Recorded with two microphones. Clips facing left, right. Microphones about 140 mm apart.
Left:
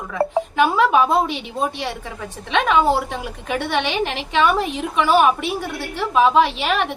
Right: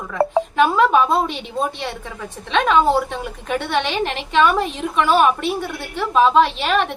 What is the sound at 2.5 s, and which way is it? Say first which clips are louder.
A woman's voice: right 1 dB; 10° left (ahead or behind).